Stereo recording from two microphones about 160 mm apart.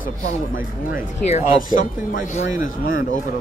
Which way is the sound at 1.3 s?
55° left (ahead or behind).